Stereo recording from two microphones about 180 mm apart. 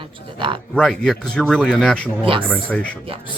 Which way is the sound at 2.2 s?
30° right (ahead or behind).